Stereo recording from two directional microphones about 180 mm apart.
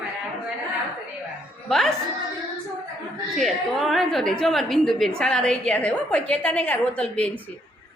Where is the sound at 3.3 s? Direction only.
Centre (ahead or behind).